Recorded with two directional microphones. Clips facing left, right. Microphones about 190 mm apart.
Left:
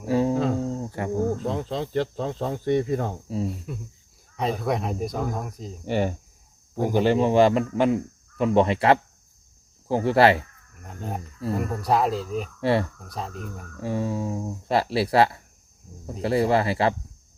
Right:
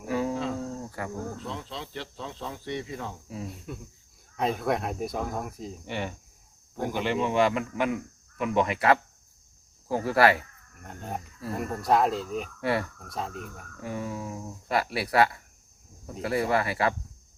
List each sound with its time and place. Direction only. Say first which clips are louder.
0.0 s a sound: left 6 dB; 30° left (ahead or behind)
0.5 s cricket: left 6 dB; 25° left (ahead or behind)
1.2 s speech: left 10 dB; 45° left (ahead or behind)
3.2 s speech: left 9 dB; 30° left (ahead or behind)
4.6 s speech: left 2 dB; centre (ahead or behind)
5.8 s a man's voice: left 11 dB; 40° left (ahead or behind)
10.8 s speech: left 3 dB; centre (ahead or behind)
12.5 s speech: left 6 dB; 25° left (ahead or behind)
13.0 s speech: left 1 dB; centre (ahead or behind)
13.7 s speech: left 7 dB; 30° left (ahead or behind)